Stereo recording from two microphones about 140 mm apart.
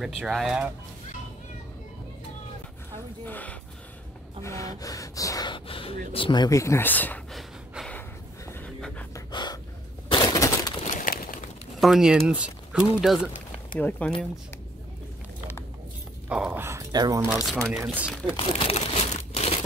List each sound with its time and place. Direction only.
0.0 s speech: centre (ahead or behind)
3.3 s a sound: 10° left (ahead or behind)
4.4 s speech: 20° left (ahead or behind)
7.3 s gasp: centre (ahead or behind)
8.5 s dog: 15° left (ahead or behind)
9.3 s gasp: 30° left (ahead or behind)
10.1 s breaking: 25° left (ahead or behind)
10.8 s a sound: 65° left (ahead or behind)
11.8 s speech: 5° right (ahead or behind)
13.7 s speech: 10° left (ahead or behind)
16.3 s speech: 10° right (ahead or behind)
16.6 s speech: 25° right (ahead or behind)
17.5 s speech: 5° right (ahead or behind)
18.4 s crumpling: 45° left (ahead or behind)